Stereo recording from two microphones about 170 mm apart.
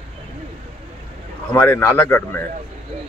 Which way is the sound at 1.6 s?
15° left (ahead or behind).